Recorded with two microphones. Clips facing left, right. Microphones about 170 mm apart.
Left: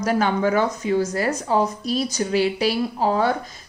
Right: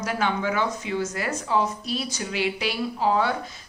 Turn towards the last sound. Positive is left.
turn(degrees=40)  # may be behind; listen again after turning